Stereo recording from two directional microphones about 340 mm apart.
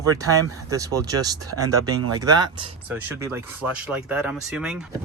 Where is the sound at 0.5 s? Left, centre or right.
Centre.